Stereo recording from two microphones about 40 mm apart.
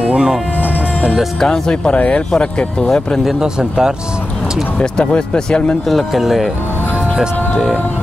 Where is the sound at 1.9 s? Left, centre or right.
Left.